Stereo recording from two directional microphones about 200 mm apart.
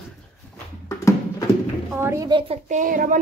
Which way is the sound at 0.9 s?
15° left (ahead or behind).